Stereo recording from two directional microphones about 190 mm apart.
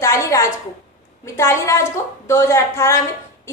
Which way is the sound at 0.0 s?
15° left (ahead or behind).